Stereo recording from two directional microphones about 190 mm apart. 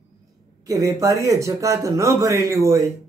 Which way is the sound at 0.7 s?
15° right (ahead or behind).